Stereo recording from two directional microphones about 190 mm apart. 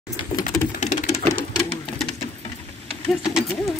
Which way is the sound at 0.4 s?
35° left (ahead or behind).